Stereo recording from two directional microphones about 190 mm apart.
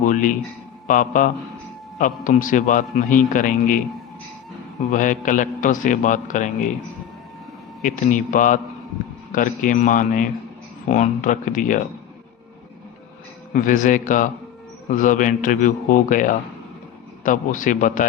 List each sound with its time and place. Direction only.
0.0 s a sound: 45° left (ahead or behind)
0.9 s a man's voice: 45° left (ahead or behind)
4.9 s a man's voice: 45° left (ahead or behind)
7.8 s a man's voice: 40° left (ahead or behind)
13.5 s a man's voice: 45° left (ahead or behind)